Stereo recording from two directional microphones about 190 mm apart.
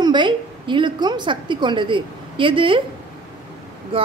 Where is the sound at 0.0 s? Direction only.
25° right (ahead or behind).